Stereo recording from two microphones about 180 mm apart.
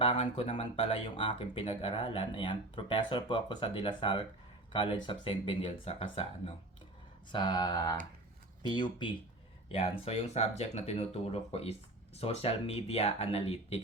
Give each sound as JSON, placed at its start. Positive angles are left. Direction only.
{"t": 0.0, "sound": "speech", "side_deg": 30}